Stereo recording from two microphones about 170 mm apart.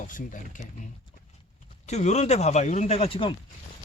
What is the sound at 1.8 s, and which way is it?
Speech, 40° left (ahead or behind).